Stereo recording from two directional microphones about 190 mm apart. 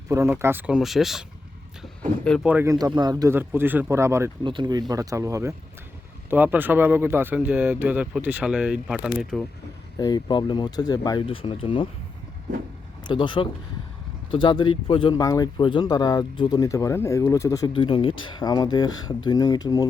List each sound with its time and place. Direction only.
0.1 s speech: 15° right (ahead or behind)
2.2 s speech: 5° left (ahead or behind)
2.5 s speech: 15° right (ahead or behind)
4.4 s speech: 25° right (ahead or behind); by 9.5 s 5° left (ahead or behind)
10.0 s speech: 20° left (ahead or behind)
13.1 s speech: 25° left (ahead or behind)